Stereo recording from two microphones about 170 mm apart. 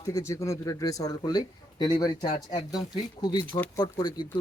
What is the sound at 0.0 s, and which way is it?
Speech, 20° left (ahead or behind).